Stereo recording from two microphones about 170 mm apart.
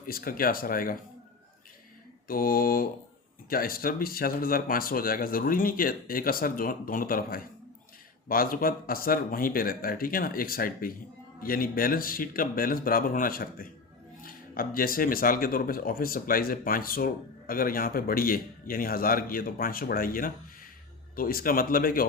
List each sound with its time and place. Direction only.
0.0 s speech: 60° left (ahead or behind)
2.2 s speech: 60° left (ahead or behind)